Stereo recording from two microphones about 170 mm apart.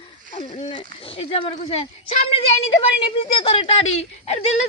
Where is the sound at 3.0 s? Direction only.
30° left (ahead or behind).